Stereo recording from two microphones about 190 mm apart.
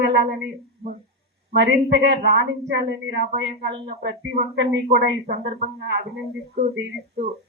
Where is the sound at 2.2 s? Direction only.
55° right (ahead or behind).